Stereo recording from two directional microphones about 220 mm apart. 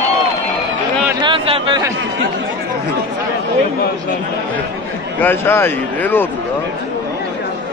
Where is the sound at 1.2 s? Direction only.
25° right (ahead or behind).